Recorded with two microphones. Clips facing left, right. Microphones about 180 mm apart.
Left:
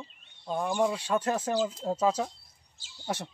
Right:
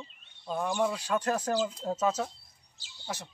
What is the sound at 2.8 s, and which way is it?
Speech, 50° left (ahead or behind).